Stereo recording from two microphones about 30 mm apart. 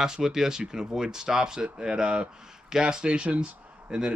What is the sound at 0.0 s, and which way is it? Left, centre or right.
Speech, centre.